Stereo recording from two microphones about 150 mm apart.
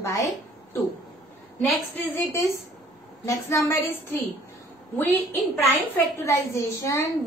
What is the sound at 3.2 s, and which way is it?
A woman's voice, 15° left (ahead or behind).